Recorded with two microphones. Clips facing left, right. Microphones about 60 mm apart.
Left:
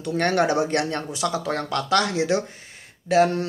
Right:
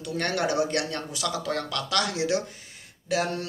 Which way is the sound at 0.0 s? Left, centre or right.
Left.